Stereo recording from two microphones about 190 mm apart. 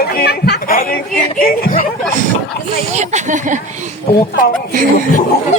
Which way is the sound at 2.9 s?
40° right (ahead or behind).